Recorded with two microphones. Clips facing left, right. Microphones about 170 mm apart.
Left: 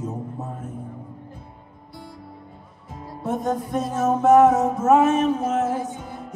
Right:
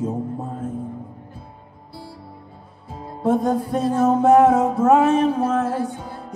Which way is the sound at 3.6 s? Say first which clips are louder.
Right 3 dB; 30° right (ahead or behind).